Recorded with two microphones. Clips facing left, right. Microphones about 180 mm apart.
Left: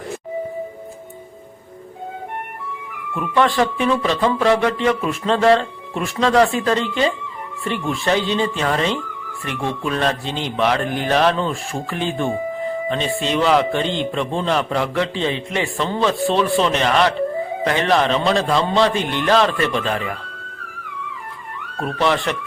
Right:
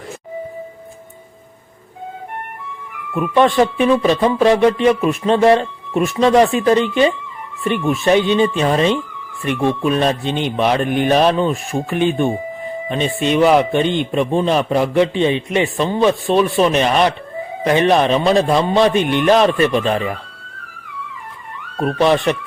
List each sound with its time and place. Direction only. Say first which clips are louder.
3.2 s a man's voice: right 4 dB; 20° right (ahead or behind)
21.8 s speech: right 5 dB; 20° right (ahead or behind)